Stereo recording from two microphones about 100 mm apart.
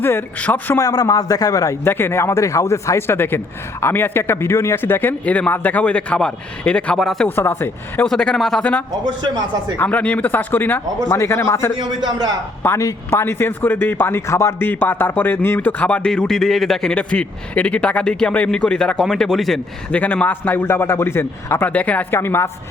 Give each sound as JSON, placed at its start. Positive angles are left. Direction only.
{"t": 0.0, "sound": "a man's voice", "side_deg": 20}
{"t": 0.8, "sound": "a man's voice", "side_deg": 35}
{"t": 7.3, "sound": "a man's voice", "side_deg": 20}
{"t": 8.0, "sound": "speech", "side_deg": 5}
{"t": 9.2, "sound": "speech", "side_deg": -45}
{"t": 9.7, "sound": "a man's voice", "side_deg": 15}
{"t": 19.9, "sound": "a man's voice", "side_deg": 15}